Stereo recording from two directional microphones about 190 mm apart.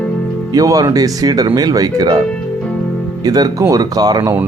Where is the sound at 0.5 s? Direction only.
20° right (ahead or behind).